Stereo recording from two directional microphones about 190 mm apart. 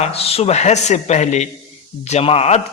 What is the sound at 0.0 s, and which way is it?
A man's voice, 30° left (ahead or behind).